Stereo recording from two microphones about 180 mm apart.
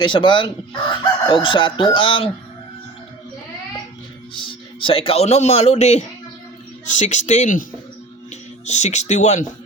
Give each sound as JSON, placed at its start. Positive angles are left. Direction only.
{"t": 0.0, "sound": "chicken", "side_deg": 25}
{"t": 4.4, "sound": "speech", "side_deg": 30}